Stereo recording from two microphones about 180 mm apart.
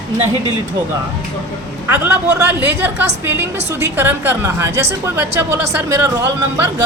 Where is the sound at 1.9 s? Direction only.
10° right (ahead or behind).